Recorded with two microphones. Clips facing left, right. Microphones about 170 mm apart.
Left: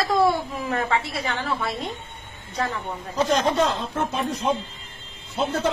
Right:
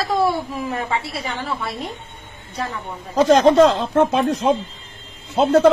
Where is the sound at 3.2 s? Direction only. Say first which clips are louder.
Right 10 dB; 90° right.